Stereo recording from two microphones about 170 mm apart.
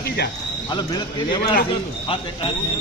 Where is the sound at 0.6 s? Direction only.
25° left (ahead or behind).